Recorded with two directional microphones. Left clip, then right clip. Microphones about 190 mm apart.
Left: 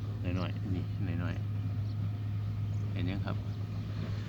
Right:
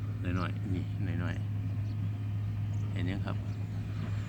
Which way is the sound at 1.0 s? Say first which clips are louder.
Right 1 dB; 5° right (ahead or behind).